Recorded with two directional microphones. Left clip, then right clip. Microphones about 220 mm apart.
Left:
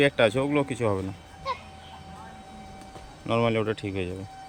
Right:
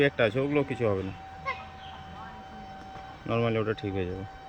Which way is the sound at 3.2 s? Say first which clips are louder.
Left 3 dB; 15° left (ahead or behind).